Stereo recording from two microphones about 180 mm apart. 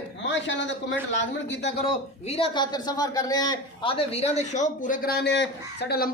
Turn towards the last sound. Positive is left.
turn(degrees=65)  # may be behind; listen again after turning